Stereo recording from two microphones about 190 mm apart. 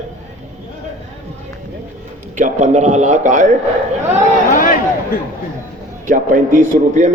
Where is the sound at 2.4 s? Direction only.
40° right (ahead or behind).